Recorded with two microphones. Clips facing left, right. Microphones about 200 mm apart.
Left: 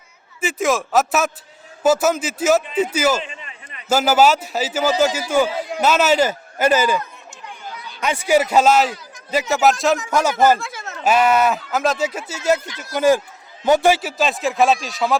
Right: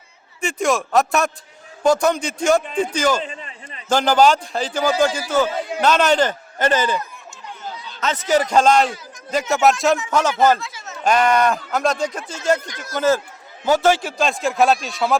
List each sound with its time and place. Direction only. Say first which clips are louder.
0.4 s speech: even; centre (ahead or behind)
3.2 s a sound: right 4 dB; 35° right (ahead or behind)
3.8 s a man's voice: even; 5° left (ahead or behind)
10.6 s a sound: left 3 dB; 55° left (ahead or behind)
11.0 s speech: left 1 dB; 5° left (ahead or behind)
12.6 s speech: even; 45° right (ahead or behind)
13.0 s a man's voice: left 3 dB; 15° left (ahead or behind)